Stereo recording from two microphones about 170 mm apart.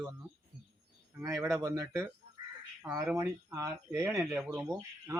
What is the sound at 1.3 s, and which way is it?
Speech, centre (ahead or behind).